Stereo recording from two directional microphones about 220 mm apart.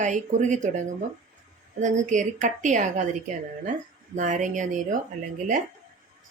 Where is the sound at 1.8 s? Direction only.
35° right (ahead or behind).